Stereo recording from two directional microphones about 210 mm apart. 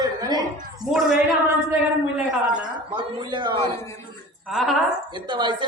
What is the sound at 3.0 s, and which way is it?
Speech, 20° right (ahead or behind).